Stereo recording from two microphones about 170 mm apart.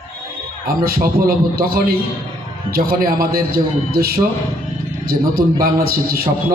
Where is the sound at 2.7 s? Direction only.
60° right (ahead or behind).